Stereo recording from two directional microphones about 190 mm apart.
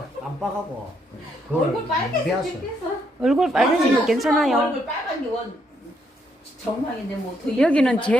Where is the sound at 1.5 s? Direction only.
5° right (ahead or behind).